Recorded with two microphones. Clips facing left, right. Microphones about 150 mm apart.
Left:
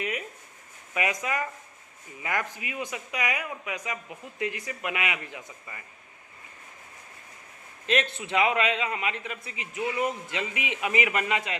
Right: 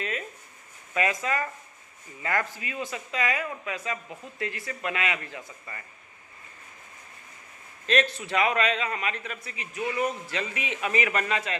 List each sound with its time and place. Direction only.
0.0 s a sound: 15° left (ahead or behind)
0.9 s a man's voice: 15° left (ahead or behind)
7.9 s a man's voice: 20° left (ahead or behind)